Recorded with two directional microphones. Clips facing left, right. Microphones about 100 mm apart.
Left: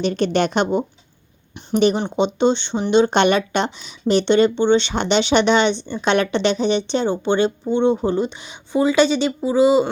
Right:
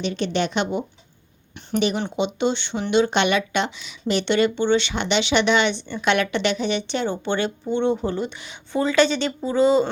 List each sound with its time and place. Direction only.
0.0 s a woman's voice: 45° left (ahead or behind)
2.1 s speech: 30° left (ahead or behind); by 9.9 s 10° left (ahead or behind)